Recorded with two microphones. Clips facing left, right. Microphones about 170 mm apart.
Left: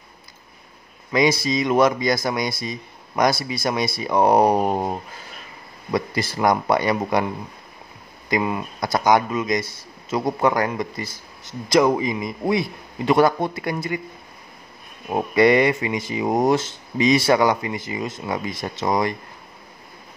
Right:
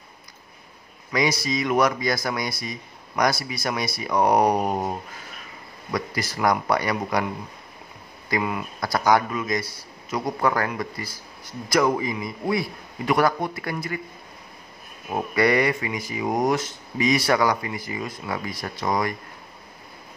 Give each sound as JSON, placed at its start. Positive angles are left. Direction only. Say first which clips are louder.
{"t": 1.1, "sound": "speech", "louder": "left 4 dB", "side_deg": 25}
{"t": 8.3, "sound": "speech", "louder": "left 3 dB", "side_deg": 25}
{"t": 15.3, "sound": "speech", "louder": "left 5 dB", "side_deg": 20}